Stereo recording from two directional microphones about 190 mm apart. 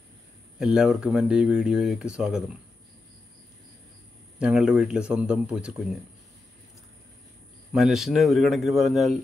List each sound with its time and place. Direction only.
0.6 s speech: 5° right (ahead or behind)
4.4 s speech: 5° right (ahead or behind)
7.7 s speech: centre (ahead or behind)